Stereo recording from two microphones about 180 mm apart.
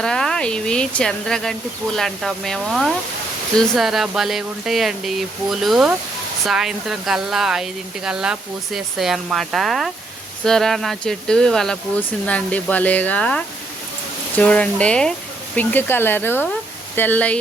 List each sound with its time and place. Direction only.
0.0 s speech: 5° left (ahead or behind)